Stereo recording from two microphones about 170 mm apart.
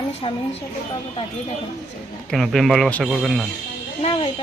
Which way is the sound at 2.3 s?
Centre (ahead or behind).